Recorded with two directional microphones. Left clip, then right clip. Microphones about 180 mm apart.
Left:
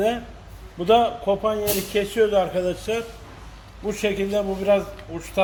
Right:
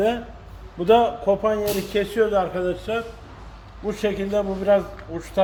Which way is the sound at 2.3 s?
30° left (ahead or behind).